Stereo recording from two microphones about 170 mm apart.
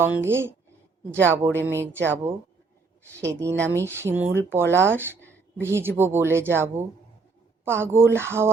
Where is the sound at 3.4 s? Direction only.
15° right (ahead or behind).